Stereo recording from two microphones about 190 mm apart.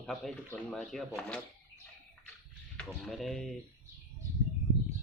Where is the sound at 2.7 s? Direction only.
5° left (ahead or behind).